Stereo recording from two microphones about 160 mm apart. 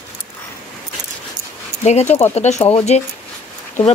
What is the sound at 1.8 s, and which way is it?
Speech, 45° left (ahead or behind).